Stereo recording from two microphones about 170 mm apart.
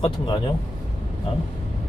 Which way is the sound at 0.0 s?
30° left (ahead or behind).